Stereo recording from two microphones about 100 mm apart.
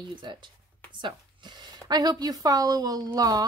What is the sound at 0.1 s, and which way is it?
Speech, 50° right (ahead or behind).